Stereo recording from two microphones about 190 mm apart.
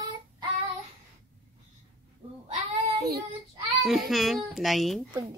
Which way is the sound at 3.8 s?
Centre (ahead or behind).